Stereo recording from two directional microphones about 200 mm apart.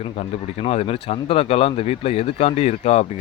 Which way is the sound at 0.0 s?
30° left (ahead or behind).